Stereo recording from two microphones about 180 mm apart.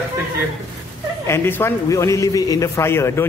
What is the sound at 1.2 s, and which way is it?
A man's voice, 15° left (ahead or behind).